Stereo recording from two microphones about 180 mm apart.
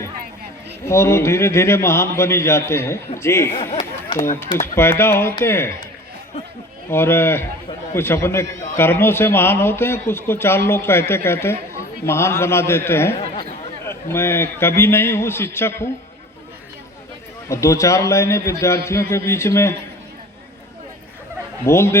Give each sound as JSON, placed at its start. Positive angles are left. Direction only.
{"t": 0.9, "sound": "a man's voice", "side_deg": 15}
{"t": 3.5, "sound": "a sound", "side_deg": 30}
{"t": 4.6, "sound": "a man's voice", "side_deg": 15}
{"t": 6.9, "sound": "a man's voice", "side_deg": 15}
{"t": 17.5, "sound": "a man's voice", "side_deg": 15}
{"t": 21.7, "sound": "a man's voice", "side_deg": 15}